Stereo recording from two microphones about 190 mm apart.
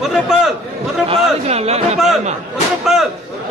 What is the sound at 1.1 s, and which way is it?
Speech, 35° right (ahead or behind).